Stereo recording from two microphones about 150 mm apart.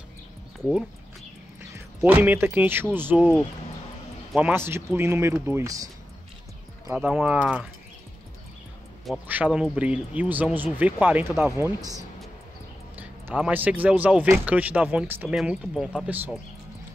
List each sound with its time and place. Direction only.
2.0 s speech: 10° right (ahead or behind)
4.4 s speech: 15° right (ahead or behind)
6.9 s speech: 15° right (ahead or behind)
9.3 s speech: 10° right (ahead or behind)
12.9 s speech: 10° right (ahead or behind)